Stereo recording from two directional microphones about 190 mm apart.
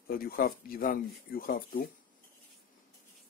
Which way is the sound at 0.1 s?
50° left (ahead or behind).